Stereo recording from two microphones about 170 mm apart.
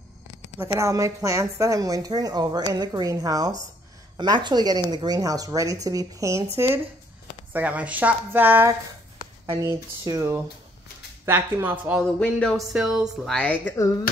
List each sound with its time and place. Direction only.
0.7 s a woman's voice: 20° right (ahead or behind)
12.2 s speech: 5° left (ahead or behind)